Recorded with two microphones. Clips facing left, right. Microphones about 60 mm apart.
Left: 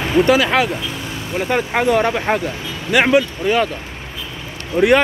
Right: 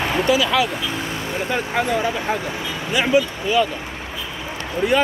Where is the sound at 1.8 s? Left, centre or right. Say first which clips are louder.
Left 5 dB; left.